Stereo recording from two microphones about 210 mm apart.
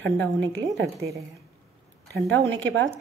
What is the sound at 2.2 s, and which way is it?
Speech, 60° right (ahead or behind).